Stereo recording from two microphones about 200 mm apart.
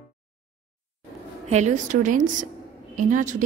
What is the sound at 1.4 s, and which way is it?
A woman's voice, 35° right (ahead or behind).